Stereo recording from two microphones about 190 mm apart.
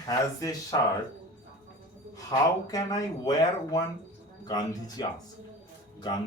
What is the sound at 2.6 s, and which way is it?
Speech, 20° left (ahead or behind).